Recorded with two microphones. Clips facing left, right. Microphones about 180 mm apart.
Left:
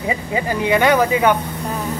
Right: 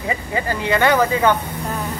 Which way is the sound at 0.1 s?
15° left (ahead or behind).